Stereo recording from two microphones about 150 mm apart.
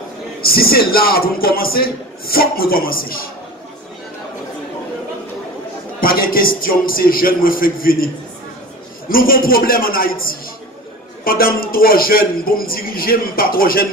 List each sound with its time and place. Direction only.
0.4 s a man's voice: 90° left
5.9 s a man's voice: 75° left (ahead or behind)
9.1 s a man's voice: 75° left (ahead or behind)